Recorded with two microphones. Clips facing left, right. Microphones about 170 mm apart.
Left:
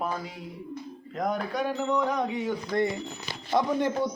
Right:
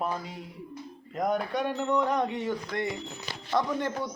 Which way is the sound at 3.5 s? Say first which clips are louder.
Left 3 dB; 15° left (ahead or behind).